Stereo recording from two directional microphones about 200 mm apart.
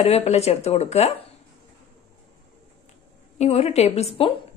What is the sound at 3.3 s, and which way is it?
Speech, 30° left (ahead or behind).